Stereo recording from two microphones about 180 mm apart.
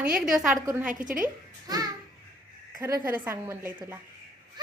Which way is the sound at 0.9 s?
45° right (ahead or behind).